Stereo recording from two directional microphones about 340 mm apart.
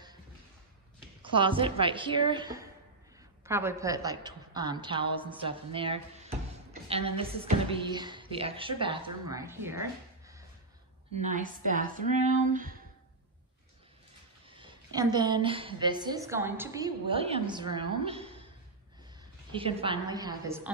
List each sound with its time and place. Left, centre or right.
1.2 s a woman's voice: centre
11.1 s speech: right
14.5 s a woman's voice: centre
19.5 s a woman's voice: centre